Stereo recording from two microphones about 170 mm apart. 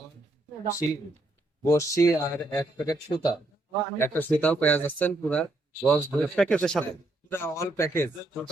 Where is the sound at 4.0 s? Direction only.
10° left (ahead or behind).